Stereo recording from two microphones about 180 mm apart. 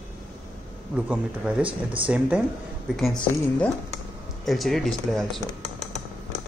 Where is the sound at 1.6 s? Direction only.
30° right (ahead or behind).